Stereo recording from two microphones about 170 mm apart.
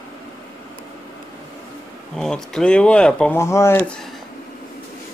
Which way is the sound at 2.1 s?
5° left (ahead or behind).